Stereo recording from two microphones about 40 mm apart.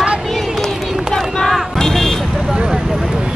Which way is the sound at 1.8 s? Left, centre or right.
Centre.